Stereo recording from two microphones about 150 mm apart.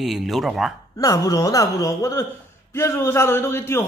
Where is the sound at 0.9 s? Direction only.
20° left (ahead or behind).